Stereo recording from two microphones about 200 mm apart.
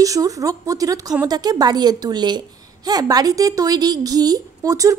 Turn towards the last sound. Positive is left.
turn(degrees=-15)  # may be behind; listen again after turning